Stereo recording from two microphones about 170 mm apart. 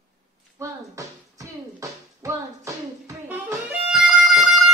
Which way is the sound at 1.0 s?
20° right (ahead or behind).